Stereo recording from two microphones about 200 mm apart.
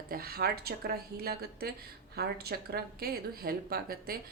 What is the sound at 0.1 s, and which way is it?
Speech, 50° right (ahead or behind).